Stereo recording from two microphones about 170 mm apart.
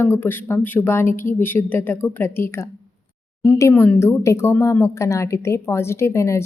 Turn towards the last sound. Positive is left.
turn(degrees=15)  # may be behind; listen again after turning